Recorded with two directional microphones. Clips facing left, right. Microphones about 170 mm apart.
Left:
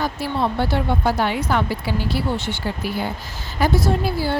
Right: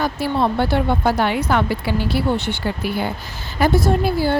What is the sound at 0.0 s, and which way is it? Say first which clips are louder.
Speech: right 3 dB; 60° right (ahead or behind).